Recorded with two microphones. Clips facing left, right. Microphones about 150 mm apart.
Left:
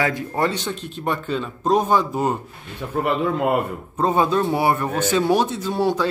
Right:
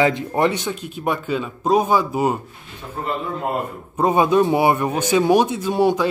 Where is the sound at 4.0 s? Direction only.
15° right (ahead or behind).